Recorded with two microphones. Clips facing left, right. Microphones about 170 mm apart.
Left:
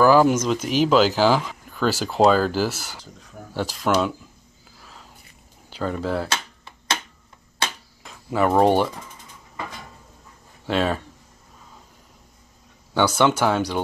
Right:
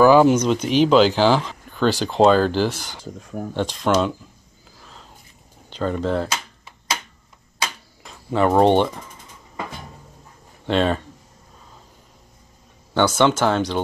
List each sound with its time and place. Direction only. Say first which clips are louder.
0.0 s speech: right 3 dB; centre (ahead or behind)
3.0 s speech: right 11 dB; 50° right (ahead or behind)
3.5 s speech: right 2 dB; 5° left (ahead or behind)
5.7 s speech: right 3 dB; 5° left (ahead or behind)
8.0 s speech: right 2 dB; 5° left (ahead or behind)
10.7 s speech: right 3 dB; 5° left (ahead or behind)
12.9 s speech: right 2 dB; 10° left (ahead or behind)